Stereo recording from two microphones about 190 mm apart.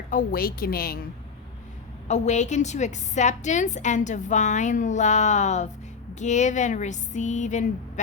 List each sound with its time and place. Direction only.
0.1 s a woman's voice: 50° left (ahead or behind)
2.0 s a woman's voice: 35° left (ahead or behind)